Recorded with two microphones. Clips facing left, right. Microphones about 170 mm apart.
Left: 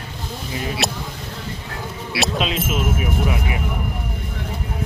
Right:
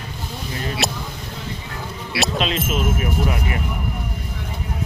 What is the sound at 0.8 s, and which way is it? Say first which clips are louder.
Speech: right 1 dB; centre (ahead or behind).